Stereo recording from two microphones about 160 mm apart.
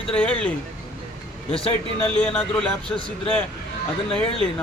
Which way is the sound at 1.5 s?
35° left (ahead or behind).